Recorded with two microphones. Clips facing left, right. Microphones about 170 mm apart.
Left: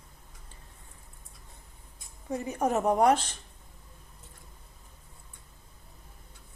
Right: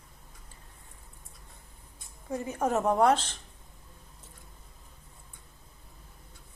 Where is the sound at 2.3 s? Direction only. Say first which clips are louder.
Left 1 dB; 20° left (ahead or behind).